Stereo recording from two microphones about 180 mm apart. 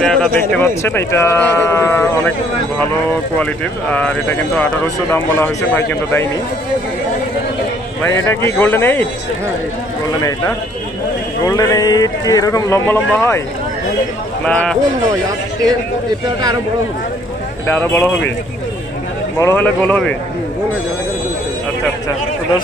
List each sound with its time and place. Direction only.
0.0 s speech: 5° left (ahead or behind)
3.9 s speech: 10° left (ahead or behind)
8.1 s speech: 15° left (ahead or behind)
11.4 s speech: 20° left (ahead or behind)
14.4 s speech: 5° left (ahead or behind)
17.6 s speech: 5° left (ahead or behind)
19.3 s speech: 15° left (ahead or behind)